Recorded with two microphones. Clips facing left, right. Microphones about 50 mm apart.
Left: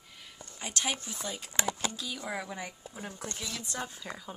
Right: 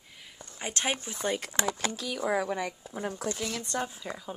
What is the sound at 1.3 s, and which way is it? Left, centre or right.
A woman's voice, right.